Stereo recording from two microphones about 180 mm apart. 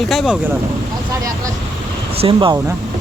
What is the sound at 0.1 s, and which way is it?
Speech, centre (ahead or behind).